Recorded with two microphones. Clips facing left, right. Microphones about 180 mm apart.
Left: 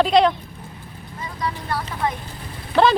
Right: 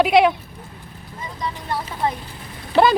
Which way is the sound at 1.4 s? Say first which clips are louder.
Left 1 dB; 20° right (ahead or behind).